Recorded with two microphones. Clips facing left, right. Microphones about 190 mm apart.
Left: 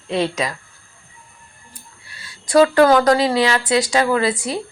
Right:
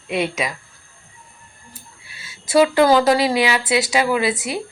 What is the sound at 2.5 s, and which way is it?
A woman's voice, 20° right (ahead or behind).